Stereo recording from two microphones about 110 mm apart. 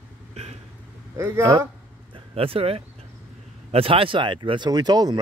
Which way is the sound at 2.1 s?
60° right (ahead or behind).